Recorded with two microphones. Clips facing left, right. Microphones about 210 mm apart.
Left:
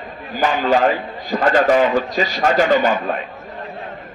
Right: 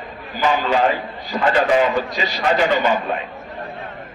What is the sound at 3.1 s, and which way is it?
Speech, 40° left (ahead or behind).